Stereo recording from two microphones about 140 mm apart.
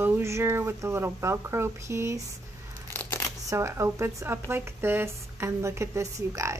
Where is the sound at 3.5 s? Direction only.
20° right (ahead or behind).